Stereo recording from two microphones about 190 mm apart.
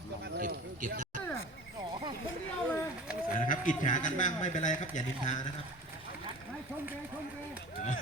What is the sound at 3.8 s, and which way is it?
A man's voice, 40° left (ahead or behind).